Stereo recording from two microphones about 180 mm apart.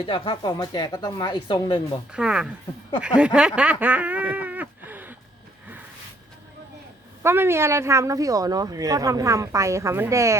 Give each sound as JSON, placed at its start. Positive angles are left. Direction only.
{"t": 0.0, "sound": "speech", "side_deg": 25}
{"t": 2.1, "sound": "speech", "side_deg": -5}
{"t": 3.2, "sound": "snicker", "side_deg": -5}
{"t": 7.2, "sound": "speech", "side_deg": -15}